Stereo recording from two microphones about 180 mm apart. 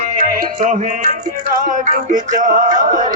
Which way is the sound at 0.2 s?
50° right (ahead or behind).